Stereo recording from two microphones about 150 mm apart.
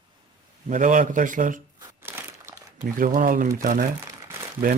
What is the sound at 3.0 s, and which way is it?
Speech, 70° right (ahead or behind).